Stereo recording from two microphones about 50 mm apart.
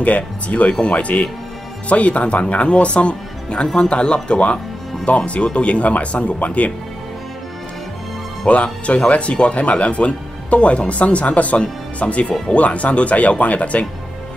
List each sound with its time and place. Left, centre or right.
0.0 s speech: left
8.5 s speech: left